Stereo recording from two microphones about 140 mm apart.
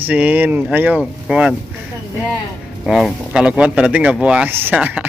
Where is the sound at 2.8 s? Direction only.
Centre (ahead or behind).